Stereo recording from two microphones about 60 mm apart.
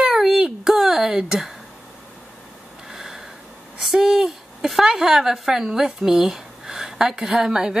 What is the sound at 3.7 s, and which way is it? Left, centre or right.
A woman's voice, centre.